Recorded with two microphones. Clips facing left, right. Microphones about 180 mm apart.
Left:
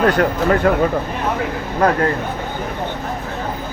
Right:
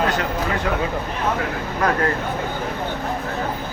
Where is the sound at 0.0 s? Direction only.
50° left (ahead or behind).